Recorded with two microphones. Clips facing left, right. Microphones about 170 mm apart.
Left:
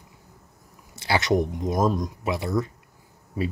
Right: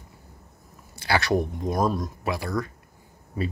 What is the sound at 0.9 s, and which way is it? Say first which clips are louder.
Speech: left 1 dB; 20° left (ahead or behind).